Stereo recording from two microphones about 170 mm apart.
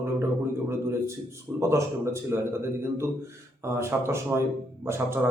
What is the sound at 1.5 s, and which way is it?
Speech, 15° right (ahead or behind).